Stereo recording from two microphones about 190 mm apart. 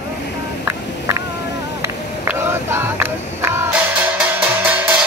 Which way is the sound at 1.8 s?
10° right (ahead or behind).